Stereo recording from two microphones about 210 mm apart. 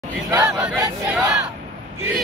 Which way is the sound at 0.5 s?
5° right (ahead or behind).